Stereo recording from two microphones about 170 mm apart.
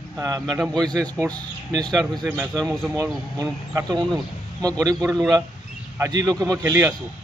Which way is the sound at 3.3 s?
20° right (ahead or behind).